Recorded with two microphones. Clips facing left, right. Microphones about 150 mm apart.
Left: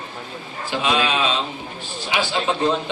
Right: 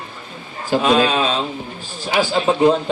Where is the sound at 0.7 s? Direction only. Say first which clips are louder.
Right 6 dB; 40° right (ahead or behind).